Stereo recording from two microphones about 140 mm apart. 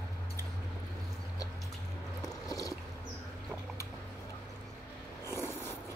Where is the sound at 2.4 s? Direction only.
25° left (ahead or behind).